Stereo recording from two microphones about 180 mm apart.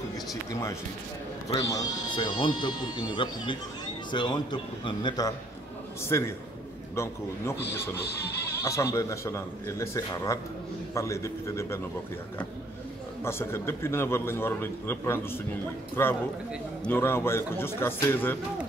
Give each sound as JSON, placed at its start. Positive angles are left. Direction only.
{"t": 0.5, "sound": "a man's voice", "side_deg": 20}
{"t": 13.2, "sound": "a man's voice", "side_deg": 15}